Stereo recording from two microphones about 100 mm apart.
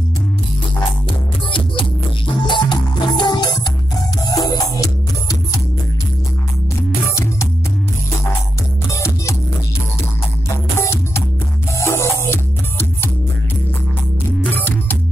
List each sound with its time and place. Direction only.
2.4 s music: 50° left (ahead or behind)
8.9 s music: 30° left (ahead or behind)
10.8 s music: 25° left (ahead or behind)